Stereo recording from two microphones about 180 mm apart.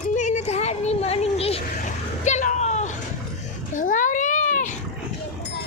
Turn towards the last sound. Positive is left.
turn(degrees=45)  # may be behind; listen again after turning